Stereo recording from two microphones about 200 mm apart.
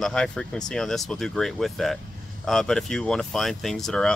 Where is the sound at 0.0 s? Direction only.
5° left (ahead or behind).